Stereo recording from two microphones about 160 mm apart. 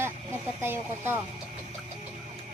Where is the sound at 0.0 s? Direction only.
15° right (ahead or behind).